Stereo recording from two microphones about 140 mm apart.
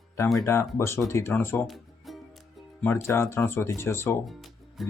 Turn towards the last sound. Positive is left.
turn(degrees=0)  # may be behind; listen again after turning